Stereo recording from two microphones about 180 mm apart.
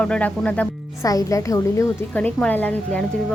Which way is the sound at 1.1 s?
20° left (ahead or behind).